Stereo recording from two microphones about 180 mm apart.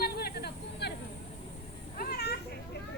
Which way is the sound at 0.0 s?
60° left (ahead or behind).